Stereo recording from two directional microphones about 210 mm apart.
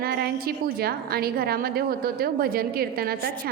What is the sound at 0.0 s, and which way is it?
A woman's voice, 50° right (ahead or behind).